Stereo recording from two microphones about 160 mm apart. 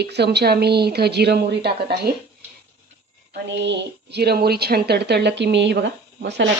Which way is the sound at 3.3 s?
90° right.